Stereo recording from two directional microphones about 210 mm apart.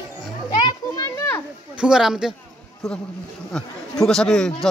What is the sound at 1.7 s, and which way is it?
Speech, 5° right (ahead or behind).